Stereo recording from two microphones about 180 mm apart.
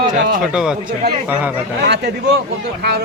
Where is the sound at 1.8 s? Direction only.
70° right (ahead or behind).